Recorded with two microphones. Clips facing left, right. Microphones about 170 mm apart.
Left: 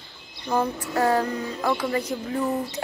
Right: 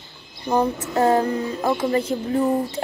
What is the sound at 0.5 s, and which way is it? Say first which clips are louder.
A woman's voice: right 4 dB; 20° right (ahead or behind).